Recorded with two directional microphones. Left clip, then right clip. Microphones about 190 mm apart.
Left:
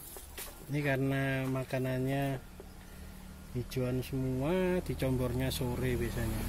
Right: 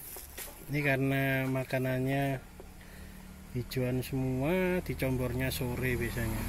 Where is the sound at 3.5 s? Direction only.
15° right (ahead or behind).